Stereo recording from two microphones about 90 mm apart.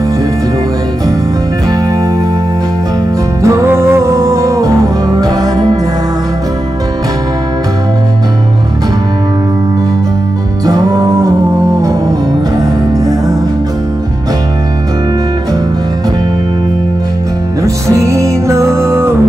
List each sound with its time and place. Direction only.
3.4 s music: 30° right (ahead or behind)
10.6 s music: 45° right (ahead or behind)
17.8 s music: 35° right (ahead or behind)